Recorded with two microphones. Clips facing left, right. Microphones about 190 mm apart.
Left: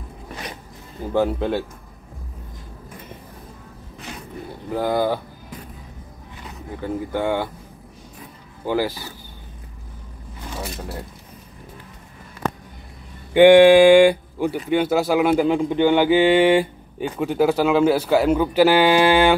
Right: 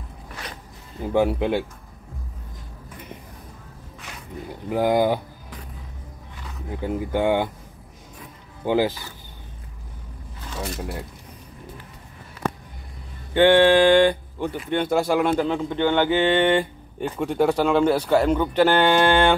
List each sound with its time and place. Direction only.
0.3 s music: 15° left (ahead or behind)
1.1 s speech: 15° right (ahead or behind)
4.6 s speech: 15° right (ahead or behind)
6.8 s speech: 15° right (ahead or behind)
8.6 s speech: 20° right (ahead or behind)
13.3 s speech: 15° left (ahead or behind)